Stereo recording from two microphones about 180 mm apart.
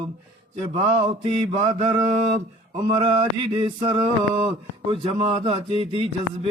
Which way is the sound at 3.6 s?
30° right (ahead or behind).